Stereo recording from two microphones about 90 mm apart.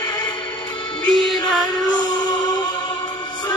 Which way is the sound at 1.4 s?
55° left (ahead or behind).